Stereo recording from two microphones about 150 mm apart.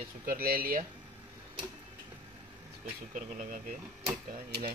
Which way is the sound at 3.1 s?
65° right (ahead or behind).